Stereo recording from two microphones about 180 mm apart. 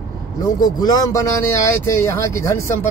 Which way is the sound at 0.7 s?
20° left (ahead or behind).